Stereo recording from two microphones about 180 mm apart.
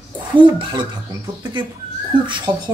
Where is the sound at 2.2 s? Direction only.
25° right (ahead or behind).